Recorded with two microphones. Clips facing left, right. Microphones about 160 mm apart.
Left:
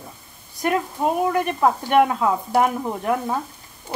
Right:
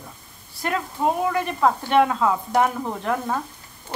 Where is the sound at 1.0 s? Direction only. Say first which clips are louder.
Even; 15° left (ahead or behind).